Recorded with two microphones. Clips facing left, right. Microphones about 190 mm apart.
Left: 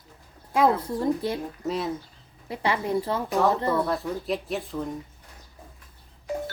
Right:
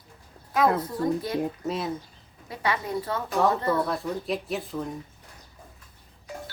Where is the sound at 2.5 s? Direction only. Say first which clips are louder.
Left 3 dB; 25° left (ahead or behind).